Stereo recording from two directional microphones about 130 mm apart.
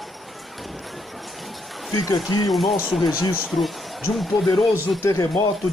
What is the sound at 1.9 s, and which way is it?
Speech, 25° left (ahead or behind).